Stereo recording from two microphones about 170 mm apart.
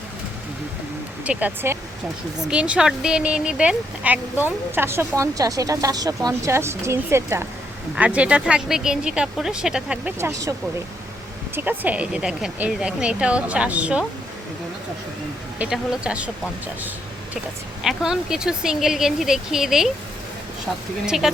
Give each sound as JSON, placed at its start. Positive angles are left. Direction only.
{"t": 1.2, "sound": "a woman's voice", "side_deg": -10}
{"t": 11.5, "sound": "a woman's voice", "side_deg": -10}
{"t": 15.5, "sound": "a woman's voice", "side_deg": -5}
{"t": 17.8, "sound": "speech", "side_deg": -5}